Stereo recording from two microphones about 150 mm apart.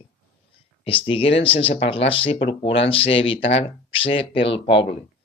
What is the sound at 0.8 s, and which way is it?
Speech, 35° left (ahead or behind).